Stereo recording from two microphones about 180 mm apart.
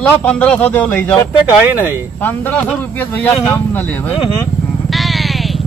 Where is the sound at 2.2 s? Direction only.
10° left (ahead or behind).